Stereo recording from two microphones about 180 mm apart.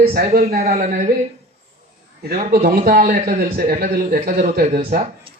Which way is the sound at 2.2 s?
55° right (ahead or behind).